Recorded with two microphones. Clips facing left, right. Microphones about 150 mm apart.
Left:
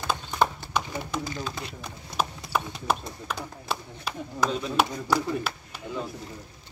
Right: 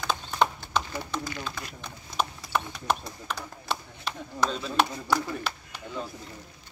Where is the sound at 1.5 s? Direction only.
25° left (ahead or behind).